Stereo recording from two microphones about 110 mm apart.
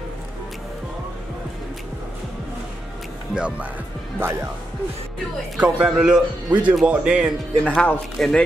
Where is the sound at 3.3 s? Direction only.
10° right (ahead or behind).